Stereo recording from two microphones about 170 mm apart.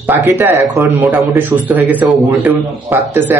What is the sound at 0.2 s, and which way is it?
A man's voice, 15° right (ahead or behind).